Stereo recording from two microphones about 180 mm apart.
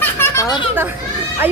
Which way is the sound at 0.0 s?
15° left (ahead or behind).